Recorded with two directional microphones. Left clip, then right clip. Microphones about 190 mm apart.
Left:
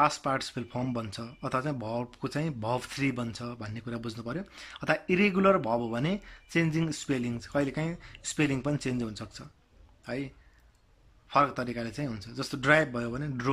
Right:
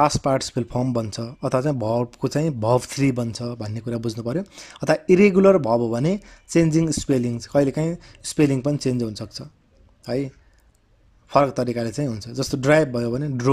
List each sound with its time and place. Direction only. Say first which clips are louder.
0.0 s speech: right 7 dB; 30° right (ahead or behind)